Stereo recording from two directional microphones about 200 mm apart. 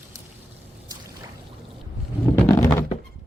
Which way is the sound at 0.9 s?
20° right (ahead or behind).